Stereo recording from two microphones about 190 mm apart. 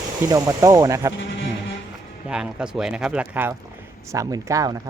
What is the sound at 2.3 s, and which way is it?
Speech, 5° right (ahead or behind).